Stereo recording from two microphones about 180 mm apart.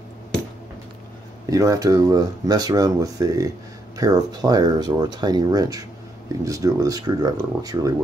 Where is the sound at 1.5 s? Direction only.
20° right (ahead or behind).